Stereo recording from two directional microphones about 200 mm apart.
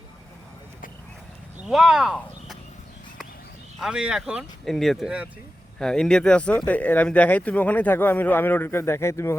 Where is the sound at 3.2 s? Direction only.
45° left (ahead or behind).